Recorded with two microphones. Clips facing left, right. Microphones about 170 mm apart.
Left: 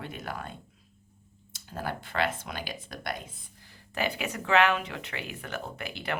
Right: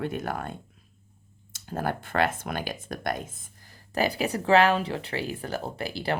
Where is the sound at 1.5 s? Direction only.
50° right (ahead or behind).